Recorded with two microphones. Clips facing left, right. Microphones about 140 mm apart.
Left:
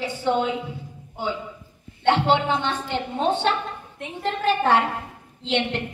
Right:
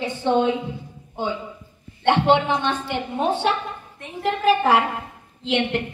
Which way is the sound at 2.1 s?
15° right (ahead or behind).